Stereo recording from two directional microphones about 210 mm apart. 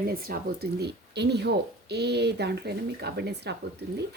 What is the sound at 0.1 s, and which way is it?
Speech, 45° right (ahead or behind).